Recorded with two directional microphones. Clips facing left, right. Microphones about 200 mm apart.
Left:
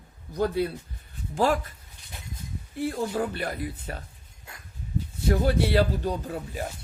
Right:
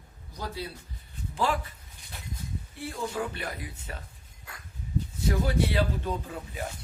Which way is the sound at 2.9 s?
40° left (ahead or behind).